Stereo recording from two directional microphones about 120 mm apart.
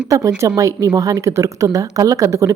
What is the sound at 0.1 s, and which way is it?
A woman's voice, 30° right (ahead or behind).